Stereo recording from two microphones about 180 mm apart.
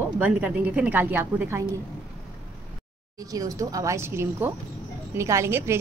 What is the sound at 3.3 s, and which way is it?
A woman's voice, 20° right (ahead or behind).